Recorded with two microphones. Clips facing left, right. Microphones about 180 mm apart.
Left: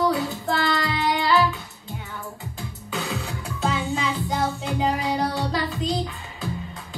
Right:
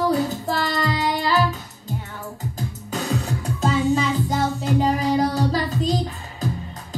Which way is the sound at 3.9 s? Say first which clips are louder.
Right 4 dB; 40° right (ahead or behind).